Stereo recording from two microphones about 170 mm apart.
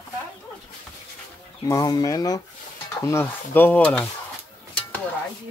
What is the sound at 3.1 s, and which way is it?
Stir, 10° left (ahead or behind).